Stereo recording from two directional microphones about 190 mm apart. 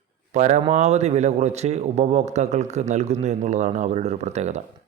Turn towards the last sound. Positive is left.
turn(degrees=-35)  # may be behind; listen again after turning